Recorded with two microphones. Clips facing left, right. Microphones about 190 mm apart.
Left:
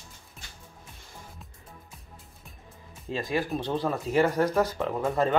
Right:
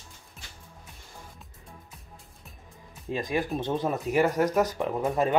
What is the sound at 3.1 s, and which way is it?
Speech, 15° right (ahead or behind).